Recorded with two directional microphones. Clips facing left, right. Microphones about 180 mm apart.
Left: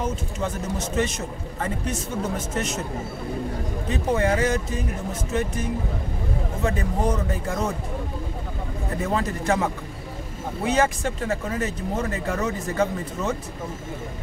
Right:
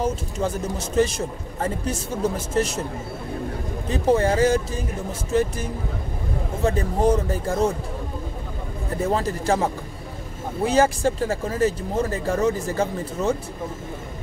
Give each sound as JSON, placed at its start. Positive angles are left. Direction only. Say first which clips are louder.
{"t": 0.0, "sound": "speech", "louder": "right 3 dB", "side_deg": -30}
{"t": 3.9, "sound": "speech", "louder": "right 3 dB", "side_deg": -30}
{"t": 9.0, "sound": "speech", "louder": "right 2 dB", "side_deg": -30}